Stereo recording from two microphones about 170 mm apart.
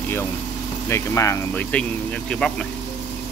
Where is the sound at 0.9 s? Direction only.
15° left (ahead or behind).